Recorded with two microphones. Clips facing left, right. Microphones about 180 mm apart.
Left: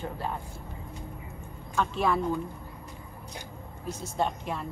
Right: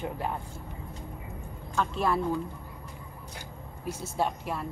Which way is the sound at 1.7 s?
Centre (ahead or behind).